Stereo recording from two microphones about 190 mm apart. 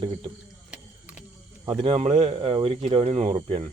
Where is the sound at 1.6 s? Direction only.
25° right (ahead or behind).